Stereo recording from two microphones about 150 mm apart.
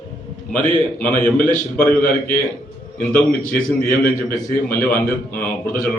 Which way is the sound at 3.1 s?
65° left (ahead or behind).